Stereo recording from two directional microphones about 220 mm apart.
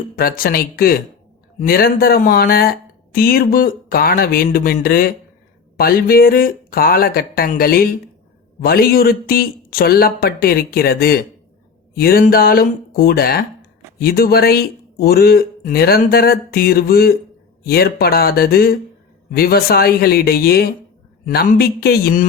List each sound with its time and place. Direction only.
0.2 s speech: 40° left (ahead or behind)